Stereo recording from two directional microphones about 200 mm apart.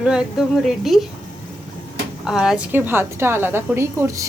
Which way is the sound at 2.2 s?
Centre (ahead or behind).